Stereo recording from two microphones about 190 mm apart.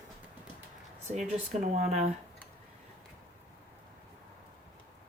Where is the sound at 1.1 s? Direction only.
40° right (ahead or behind).